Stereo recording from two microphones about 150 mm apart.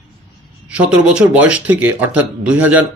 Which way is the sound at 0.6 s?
5° right (ahead or behind).